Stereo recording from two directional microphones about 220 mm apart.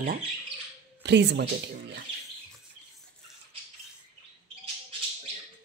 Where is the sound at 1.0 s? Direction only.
50° right (ahead or behind).